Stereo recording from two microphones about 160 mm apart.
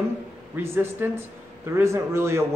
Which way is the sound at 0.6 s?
15° right (ahead or behind).